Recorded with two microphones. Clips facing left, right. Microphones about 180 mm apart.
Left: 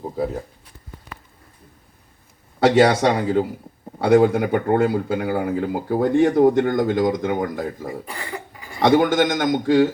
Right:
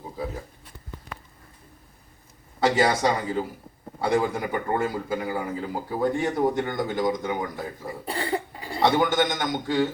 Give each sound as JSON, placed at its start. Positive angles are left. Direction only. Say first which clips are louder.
{"t": 2.6, "sound": "speech", "louder": "left 7 dB", "side_deg": 70}
{"t": 8.0, "sound": "cough", "louder": "right 5 dB", "side_deg": -35}
{"t": 9.0, "sound": "a man's voice", "louder": "left 5 dB", "side_deg": 55}